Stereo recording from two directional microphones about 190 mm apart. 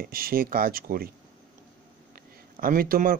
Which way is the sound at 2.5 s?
50° right (ahead or behind).